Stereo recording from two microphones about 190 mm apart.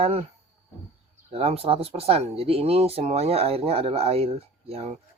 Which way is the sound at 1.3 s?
30° right (ahead or behind).